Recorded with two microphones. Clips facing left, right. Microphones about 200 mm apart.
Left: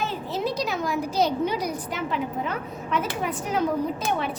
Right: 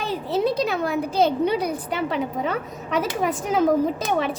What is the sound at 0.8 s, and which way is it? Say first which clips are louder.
Speech: right 3 dB; 60° right (ahead or behind).